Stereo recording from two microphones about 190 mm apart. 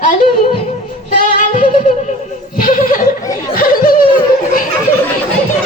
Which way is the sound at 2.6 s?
45° left (ahead or behind).